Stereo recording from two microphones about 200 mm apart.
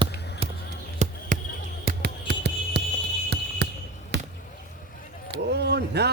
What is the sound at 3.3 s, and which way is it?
Basketball bounce, 55° right (ahead or behind).